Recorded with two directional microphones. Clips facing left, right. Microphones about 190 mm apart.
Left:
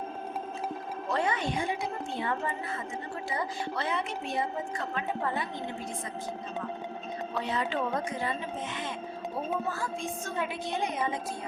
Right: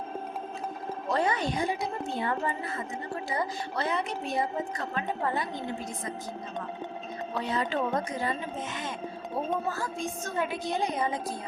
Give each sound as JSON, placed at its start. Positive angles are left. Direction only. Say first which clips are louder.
{"t": 1.1, "sound": "a woman's voice", "louder": "right 2 dB", "side_deg": -40}
{"t": 3.3, "sound": "a woman's voice", "louder": "right 1 dB", "side_deg": -40}
{"t": 7.5, "sound": "a woman's voice", "louder": "right 3 dB", "side_deg": -40}
{"t": 9.6, "sound": "a woman's voice", "louder": "right 1 dB", "side_deg": -40}